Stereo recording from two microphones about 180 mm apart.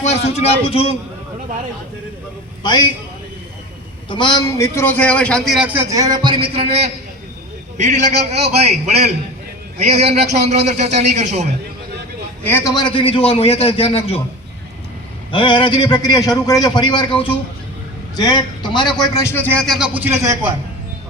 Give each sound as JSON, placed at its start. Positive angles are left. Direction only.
{"t": 0.1, "sound": "a man's voice", "side_deg": 35}
{"t": 2.6, "sound": "a man's voice", "side_deg": 25}
{"t": 4.1, "sound": "a man's voice", "side_deg": 25}
{"t": 5.5, "sound": "a man's voice", "side_deg": -10}
{"t": 5.9, "sound": "a man's voice", "side_deg": -20}
{"t": 12.4, "sound": "a man's voice", "side_deg": 10}
{"t": 15.3, "sound": "a man's voice", "side_deg": 25}